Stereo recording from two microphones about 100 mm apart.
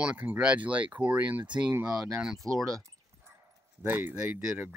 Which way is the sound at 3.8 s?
20° right (ahead or behind).